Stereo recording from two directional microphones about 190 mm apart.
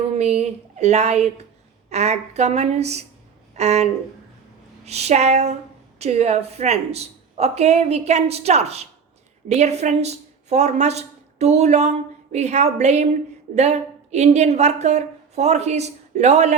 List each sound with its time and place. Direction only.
0.2 s speech: 35° right (ahead or behind)
4.9 s a woman's voice: 35° right (ahead or behind)